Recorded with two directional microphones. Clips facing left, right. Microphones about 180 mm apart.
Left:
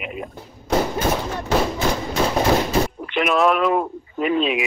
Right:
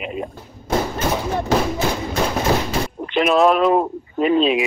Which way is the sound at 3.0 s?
30° right (ahead or behind).